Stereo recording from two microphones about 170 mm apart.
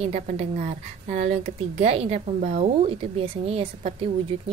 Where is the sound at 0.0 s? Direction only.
40° right (ahead or behind).